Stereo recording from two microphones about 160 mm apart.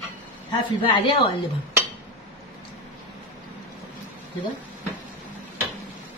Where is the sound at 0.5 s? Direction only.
35° left (ahead or behind).